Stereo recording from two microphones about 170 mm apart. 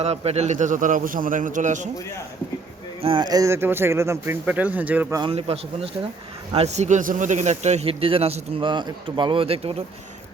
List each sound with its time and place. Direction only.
0.0 s a man's voice: 40° right (ahead or behind)
3.0 s speech: 30° right (ahead or behind); by 5.1 s 10° right (ahead or behind)
5.3 s speech: 35° right (ahead or behind)